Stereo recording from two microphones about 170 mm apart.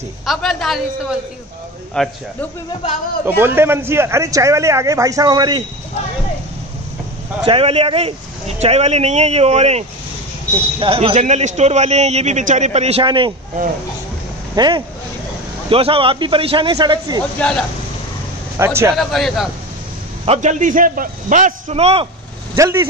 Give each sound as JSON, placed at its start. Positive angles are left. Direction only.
{"t": 0.3, "sound": "a man's voice", "side_deg": 0}
{"t": 3.3, "sound": "speech", "side_deg": -15}
{"t": 7.4, "sound": "a man's voice", "side_deg": -35}
{"t": 14.5, "sound": "a man's voice", "side_deg": -25}
{"t": 17.4, "sound": "speech", "side_deg": 5}
{"t": 18.6, "sound": "speech", "side_deg": -15}
{"t": 18.9, "sound": "a man's voice", "side_deg": 0}
{"t": 20.2, "sound": "a man's voice", "side_deg": -45}
{"t": 22.6, "sound": "speech", "side_deg": -15}